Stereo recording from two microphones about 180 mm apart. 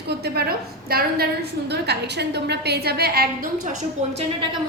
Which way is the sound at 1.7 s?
65° right (ahead or behind).